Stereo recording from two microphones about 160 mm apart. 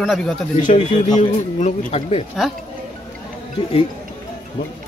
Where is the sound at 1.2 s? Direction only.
45° left (ahead or behind).